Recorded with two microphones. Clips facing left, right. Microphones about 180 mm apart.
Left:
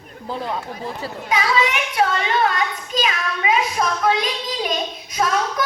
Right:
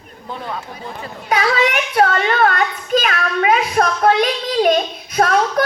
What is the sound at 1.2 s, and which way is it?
A child's voice, 45° right (ahead or behind).